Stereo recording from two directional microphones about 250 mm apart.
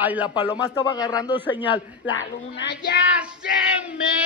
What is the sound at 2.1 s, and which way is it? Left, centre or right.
Speech, left.